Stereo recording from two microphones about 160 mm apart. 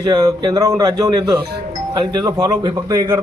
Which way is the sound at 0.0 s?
25° right (ahead or behind).